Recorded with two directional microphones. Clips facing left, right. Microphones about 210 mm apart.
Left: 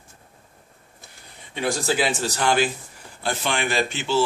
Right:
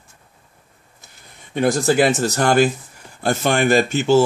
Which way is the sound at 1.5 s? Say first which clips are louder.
Right 7 dB; 50° right (ahead or behind).